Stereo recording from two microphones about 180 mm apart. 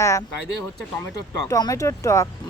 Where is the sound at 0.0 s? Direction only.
15° left (ahead or behind).